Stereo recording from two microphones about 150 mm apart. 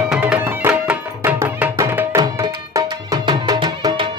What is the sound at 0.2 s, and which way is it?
Music, 10° right (ahead or behind).